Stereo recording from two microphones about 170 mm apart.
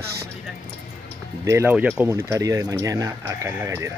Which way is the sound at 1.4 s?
15° right (ahead or behind).